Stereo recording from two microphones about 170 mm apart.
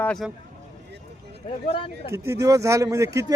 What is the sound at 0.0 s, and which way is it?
Speech, 5° left (ahead or behind).